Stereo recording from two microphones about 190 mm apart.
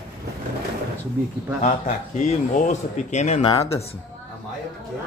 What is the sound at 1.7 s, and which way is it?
Speech, 35° left (ahead or behind).